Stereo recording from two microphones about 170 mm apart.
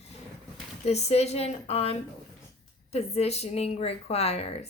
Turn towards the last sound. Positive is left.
turn(degrees=35)  # may be behind; listen again after turning